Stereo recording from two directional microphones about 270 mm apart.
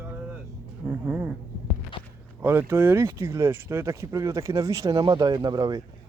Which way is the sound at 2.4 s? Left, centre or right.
Centre.